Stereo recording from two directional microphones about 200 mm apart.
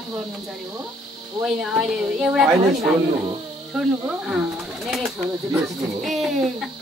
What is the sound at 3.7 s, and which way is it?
Speech, 5° right (ahead or behind).